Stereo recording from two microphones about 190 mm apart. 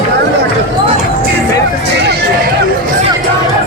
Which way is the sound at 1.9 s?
60° right (ahead or behind).